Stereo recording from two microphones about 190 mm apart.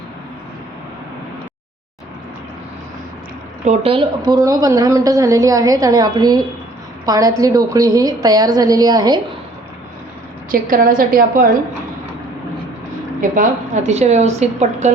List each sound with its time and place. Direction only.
3.6 s a woman's voice: 35° right (ahead or behind)
10.5 s a woman's voice: 50° right (ahead or behind)
13.3 s a woman's voice: 40° right (ahead or behind)